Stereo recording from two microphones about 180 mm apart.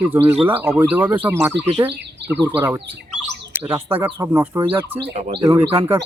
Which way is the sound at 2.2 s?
70° right (ahead or behind).